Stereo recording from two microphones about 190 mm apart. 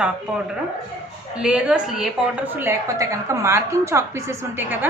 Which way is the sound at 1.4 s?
5° right (ahead or behind).